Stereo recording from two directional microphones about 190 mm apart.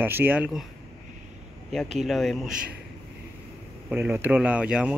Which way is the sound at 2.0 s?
Centre (ahead or behind).